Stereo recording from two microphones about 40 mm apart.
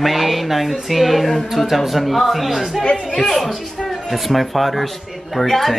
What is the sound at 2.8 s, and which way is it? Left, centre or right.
Speech, centre.